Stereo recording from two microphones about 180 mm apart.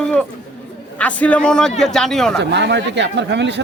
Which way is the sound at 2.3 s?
70° right (ahead or behind).